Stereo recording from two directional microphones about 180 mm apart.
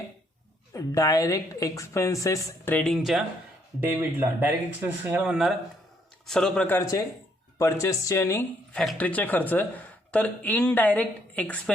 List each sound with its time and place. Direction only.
0.7 s a man's voice: 20° left (ahead or behind)